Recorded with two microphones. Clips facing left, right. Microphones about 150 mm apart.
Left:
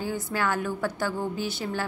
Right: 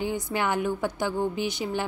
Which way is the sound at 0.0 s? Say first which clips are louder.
Right 1 dB; 20° right (ahead or behind).